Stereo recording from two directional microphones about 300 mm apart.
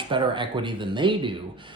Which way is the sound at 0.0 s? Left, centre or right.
Centre.